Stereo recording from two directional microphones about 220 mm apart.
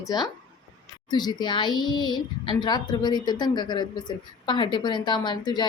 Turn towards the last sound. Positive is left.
turn(degrees=20)  # may be behind; listen again after turning